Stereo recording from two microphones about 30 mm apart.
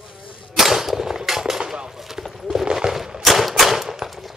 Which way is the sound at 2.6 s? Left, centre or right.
Right.